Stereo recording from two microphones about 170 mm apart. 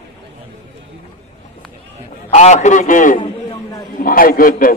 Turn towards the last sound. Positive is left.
turn(degrees=55)  # may be behind; listen again after turning